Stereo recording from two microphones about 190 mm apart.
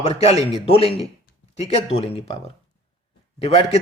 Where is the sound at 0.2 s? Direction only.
35° left (ahead or behind).